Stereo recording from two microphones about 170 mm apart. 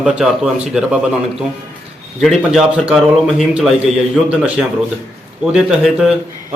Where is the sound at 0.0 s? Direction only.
5° right (ahead or behind).